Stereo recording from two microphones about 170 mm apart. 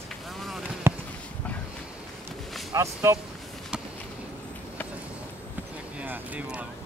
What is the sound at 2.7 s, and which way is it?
Speech, 15° right (ahead or behind).